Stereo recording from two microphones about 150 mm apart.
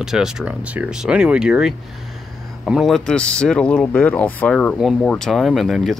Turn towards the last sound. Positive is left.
turn(degrees=0)  # may be behind; listen again after turning